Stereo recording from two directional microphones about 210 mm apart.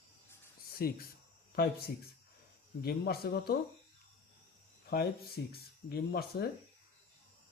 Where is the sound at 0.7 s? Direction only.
45° left (ahead or behind).